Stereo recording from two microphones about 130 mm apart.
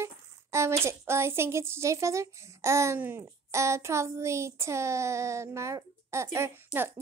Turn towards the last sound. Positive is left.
turn(degrees=-15)  # may be behind; listen again after turning